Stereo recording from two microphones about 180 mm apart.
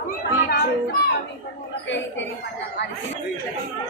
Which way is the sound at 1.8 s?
85° left.